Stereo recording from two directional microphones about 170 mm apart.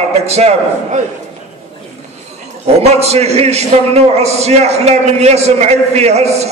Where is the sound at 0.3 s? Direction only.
40° right (ahead or behind).